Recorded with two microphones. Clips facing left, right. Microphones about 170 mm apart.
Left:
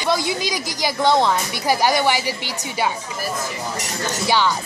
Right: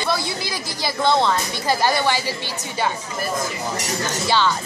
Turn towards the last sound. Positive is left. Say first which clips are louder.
# left 1 dB
turn(degrees=15)  # may be behind; listen again after turning